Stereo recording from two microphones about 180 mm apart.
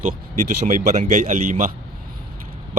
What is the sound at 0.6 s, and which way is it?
Speech, 45° right (ahead or behind).